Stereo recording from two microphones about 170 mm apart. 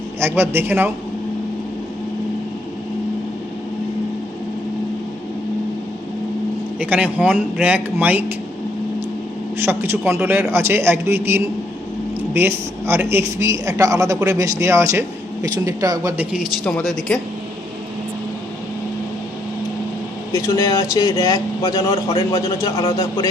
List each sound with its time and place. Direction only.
0.2 s a man's voice: 15° right (ahead or behind)
6.7 s a man's voice: 10° right (ahead or behind)
10.1 s a man's voice: 15° right (ahead or behind)
16.3 s speech: centre (ahead or behind)
20.3 s a man's voice: 20° left (ahead or behind)